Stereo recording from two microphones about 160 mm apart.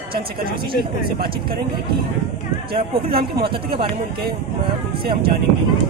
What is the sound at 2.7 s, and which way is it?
Speech, 75° right (ahead or behind).